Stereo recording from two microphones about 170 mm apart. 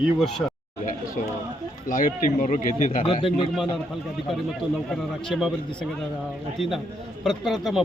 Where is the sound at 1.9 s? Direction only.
55° left (ahead or behind).